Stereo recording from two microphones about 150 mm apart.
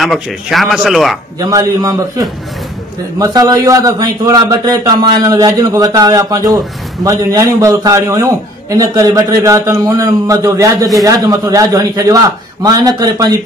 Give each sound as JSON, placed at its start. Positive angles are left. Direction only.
{"t": 0.0, "sound": "speech", "side_deg": 0}
{"t": 1.4, "sound": "a man's voice", "side_deg": -25}